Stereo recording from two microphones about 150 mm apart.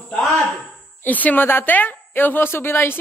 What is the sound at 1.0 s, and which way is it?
A woman's voice, 10° left (ahead or behind).